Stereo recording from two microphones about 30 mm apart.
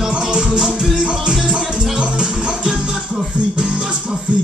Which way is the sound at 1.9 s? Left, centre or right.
Right.